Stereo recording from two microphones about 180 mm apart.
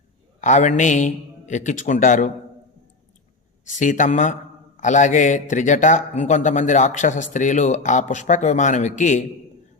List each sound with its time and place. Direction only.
0.4 s a man's voice: 40° left (ahead or behind)
3.8 s a man's voice: 45° left (ahead or behind)